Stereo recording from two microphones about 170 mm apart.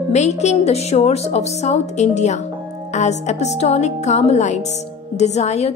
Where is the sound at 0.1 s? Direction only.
40° left (ahead or behind).